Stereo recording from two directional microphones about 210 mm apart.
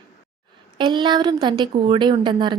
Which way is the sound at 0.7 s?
20° right (ahead or behind).